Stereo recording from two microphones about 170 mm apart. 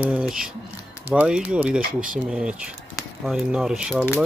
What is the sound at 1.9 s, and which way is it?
Speech, 55° right (ahead or behind).